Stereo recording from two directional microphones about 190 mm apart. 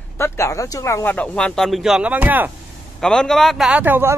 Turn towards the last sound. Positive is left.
turn(degrees=-10)  # may be behind; listen again after turning